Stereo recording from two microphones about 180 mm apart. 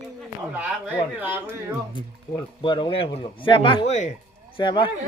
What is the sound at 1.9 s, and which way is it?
Speech, 25° left (ahead or behind).